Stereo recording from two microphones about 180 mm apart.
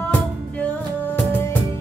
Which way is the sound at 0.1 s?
10° left (ahead or behind).